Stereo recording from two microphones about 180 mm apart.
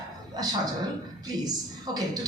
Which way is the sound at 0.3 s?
20° right (ahead or behind).